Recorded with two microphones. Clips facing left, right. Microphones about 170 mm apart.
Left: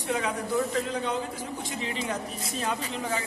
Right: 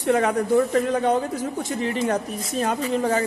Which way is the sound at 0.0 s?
55° right (ahead or behind).